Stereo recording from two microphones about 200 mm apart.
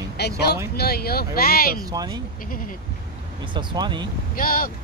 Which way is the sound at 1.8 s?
20° right (ahead or behind).